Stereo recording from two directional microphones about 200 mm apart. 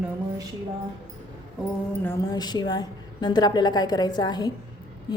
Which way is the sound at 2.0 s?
15° left (ahead or behind).